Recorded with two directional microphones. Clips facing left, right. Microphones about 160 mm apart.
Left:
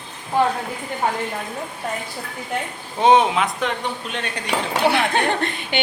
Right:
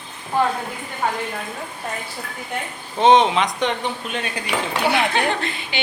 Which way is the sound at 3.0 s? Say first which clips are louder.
Right 1 dB; 10° left (ahead or behind).